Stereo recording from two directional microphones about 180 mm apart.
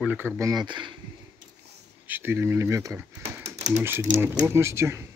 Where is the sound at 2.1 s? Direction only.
10° right (ahead or behind).